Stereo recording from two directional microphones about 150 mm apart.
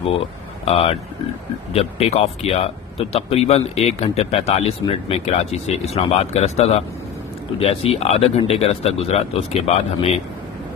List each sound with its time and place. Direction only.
0.7 s speech: 40° left (ahead or behind)